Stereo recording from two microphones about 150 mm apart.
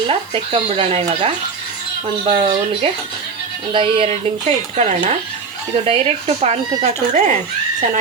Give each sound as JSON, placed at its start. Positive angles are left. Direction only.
{"t": 0.1, "sound": "speech", "side_deg": -40}